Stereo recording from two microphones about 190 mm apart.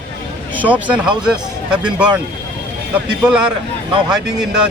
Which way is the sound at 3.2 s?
5° right (ahead or behind).